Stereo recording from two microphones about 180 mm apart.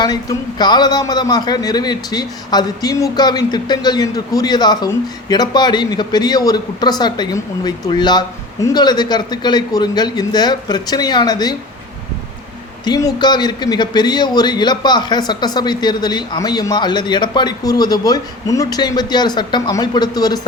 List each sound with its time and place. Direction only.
0.0 s a man's voice: 20° left (ahead or behind)
12.8 s a man's voice: 20° left (ahead or behind)